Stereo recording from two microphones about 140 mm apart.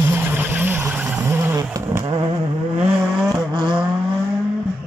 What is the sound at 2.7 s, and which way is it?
Vehicle, 10° right (ahead or behind).